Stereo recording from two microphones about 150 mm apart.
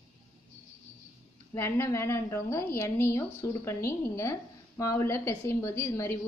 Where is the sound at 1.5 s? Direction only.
15° left (ahead or behind).